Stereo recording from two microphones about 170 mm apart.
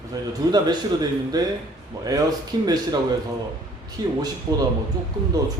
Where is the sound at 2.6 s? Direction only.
25° right (ahead or behind).